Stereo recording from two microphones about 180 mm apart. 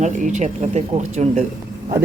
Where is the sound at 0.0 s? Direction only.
40° right (ahead or behind).